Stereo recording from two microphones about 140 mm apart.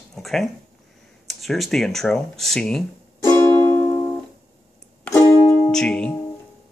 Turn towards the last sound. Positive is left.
turn(degrees=10)  # may be behind; listen again after turning